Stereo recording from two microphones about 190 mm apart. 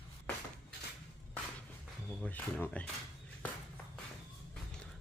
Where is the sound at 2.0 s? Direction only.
5° left (ahead or behind).